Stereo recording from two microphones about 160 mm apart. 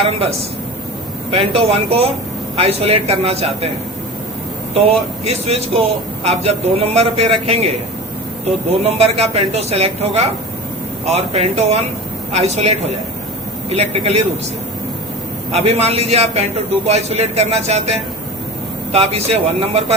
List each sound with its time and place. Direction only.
0.0 s a man's voice: 40° right (ahead or behind)
5.2 s a man's voice: 40° right (ahead or behind)
8.8 s a man's voice: 40° right (ahead or behind)
15.5 s a man's voice: 40° right (ahead or behind)